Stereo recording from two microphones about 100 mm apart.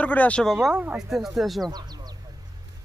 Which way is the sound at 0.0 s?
15° left (ahead or behind).